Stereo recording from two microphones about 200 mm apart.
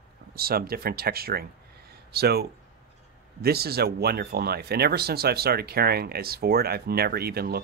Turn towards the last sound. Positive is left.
turn(degrees=-50)  # may be behind; listen again after turning